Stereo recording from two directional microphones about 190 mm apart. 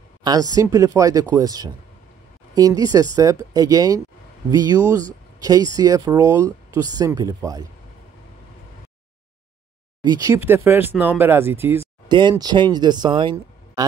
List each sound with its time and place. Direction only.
0.2 s speech: 20° right (ahead or behind)
10.0 s speech: 20° right (ahead or behind)
12.1 s speech: 25° right (ahead or behind)